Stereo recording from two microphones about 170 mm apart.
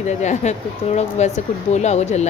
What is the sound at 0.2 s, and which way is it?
Speech, 45° left (ahead or behind).